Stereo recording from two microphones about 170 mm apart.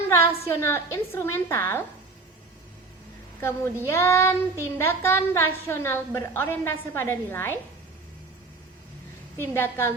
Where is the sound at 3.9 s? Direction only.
15° left (ahead or behind).